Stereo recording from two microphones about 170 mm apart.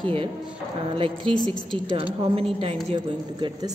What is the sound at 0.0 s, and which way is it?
A woman's voice, 30° right (ahead or behind).